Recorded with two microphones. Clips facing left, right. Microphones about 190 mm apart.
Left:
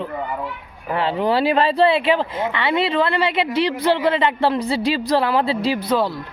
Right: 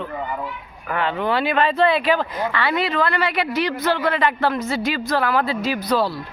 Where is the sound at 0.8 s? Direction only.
30° left (ahead or behind).